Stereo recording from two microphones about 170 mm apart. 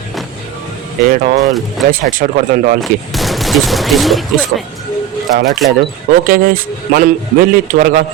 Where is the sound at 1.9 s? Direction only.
55° right (ahead or behind).